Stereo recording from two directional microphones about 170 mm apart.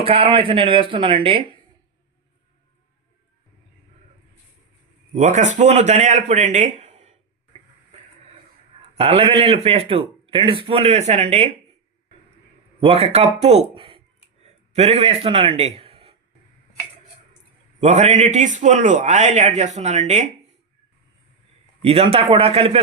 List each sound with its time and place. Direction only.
0.0 s a man's voice: 35° right (ahead or behind)
5.1 s a man's voice: 45° right (ahead or behind)
9.0 s a man's voice: 35° right (ahead or behind)
12.8 s a man's voice: 35° right (ahead or behind)
17.7 s a man's voice: 45° right (ahead or behind)
21.8 s a man's voice: 35° right (ahead or behind)